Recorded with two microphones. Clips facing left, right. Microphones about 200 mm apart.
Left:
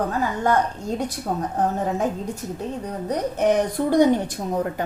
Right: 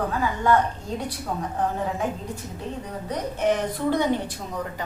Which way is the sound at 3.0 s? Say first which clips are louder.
Left 3 dB; 45° left (ahead or behind).